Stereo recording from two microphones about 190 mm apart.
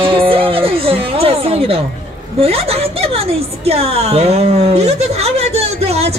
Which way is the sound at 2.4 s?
30° right (ahead or behind).